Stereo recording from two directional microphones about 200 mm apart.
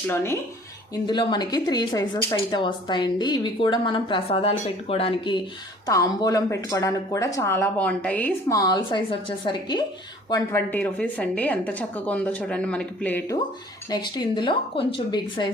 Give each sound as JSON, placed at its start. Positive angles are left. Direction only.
{"t": 0.1, "sound": "a woman's voice", "side_deg": 10}
{"t": 1.0, "sound": "a woman's voice", "side_deg": 20}
{"t": 13.9, "sound": "speech", "side_deg": 20}